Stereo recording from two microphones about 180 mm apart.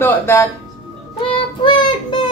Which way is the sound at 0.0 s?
15° left (ahead or behind).